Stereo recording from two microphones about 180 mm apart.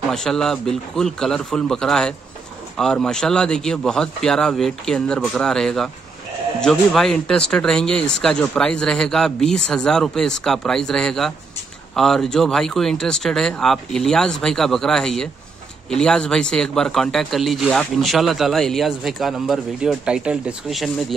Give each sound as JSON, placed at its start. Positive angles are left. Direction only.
{"t": 0.1, "sound": "speech", "side_deg": 5}